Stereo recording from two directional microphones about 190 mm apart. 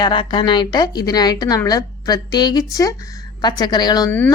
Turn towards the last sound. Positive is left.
turn(degrees=20)  # may be behind; listen again after turning